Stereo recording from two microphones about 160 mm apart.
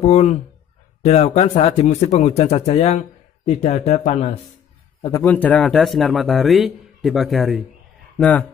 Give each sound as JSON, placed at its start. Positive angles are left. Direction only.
{"t": 0.0, "sound": "speech", "side_deg": 45}
{"t": 5.2, "sound": "speech", "side_deg": 10}